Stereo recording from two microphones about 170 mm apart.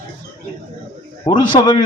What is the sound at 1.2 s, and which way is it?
Speech, 25° left (ahead or behind).